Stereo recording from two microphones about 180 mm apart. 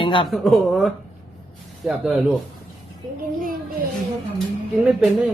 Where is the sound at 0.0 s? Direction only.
30° left (ahead or behind).